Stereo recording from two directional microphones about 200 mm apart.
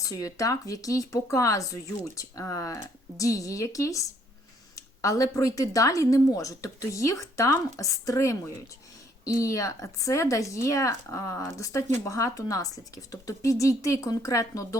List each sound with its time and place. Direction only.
0.0 s speech: 15° left (ahead or behind)